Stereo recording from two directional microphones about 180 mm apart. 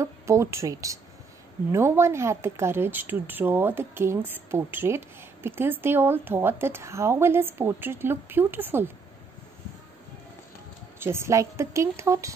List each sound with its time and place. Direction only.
0.0 s a woman's voice: 15° right (ahead or behind)
11.0 s a woman's voice: 15° right (ahead or behind)